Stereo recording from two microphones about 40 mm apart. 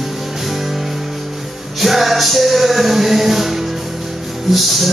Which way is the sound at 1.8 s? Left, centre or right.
Centre.